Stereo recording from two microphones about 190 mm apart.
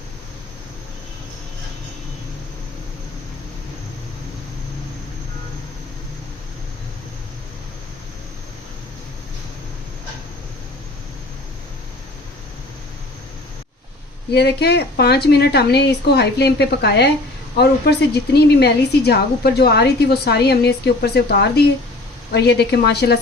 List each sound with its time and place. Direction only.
14.3 s a woman's voice: 60° left (ahead or behind)